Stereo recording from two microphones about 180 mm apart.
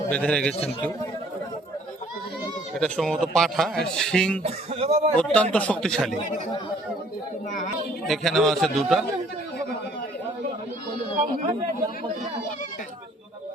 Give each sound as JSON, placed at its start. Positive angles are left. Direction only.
{"t": 0.1, "sound": "speech", "side_deg": 5}
{"t": 2.7, "sound": "speech", "side_deg": 5}
{"t": 4.4, "sound": "speech", "side_deg": -35}
{"t": 5.1, "sound": "speech", "side_deg": 5}
{"t": 8.0, "sound": "speech", "side_deg": 0}